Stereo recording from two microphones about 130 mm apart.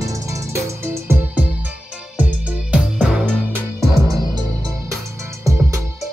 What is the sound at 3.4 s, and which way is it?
Music, 20° right (ahead or behind).